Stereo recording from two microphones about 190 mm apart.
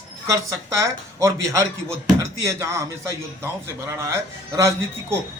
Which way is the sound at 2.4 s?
15° right (ahead or behind).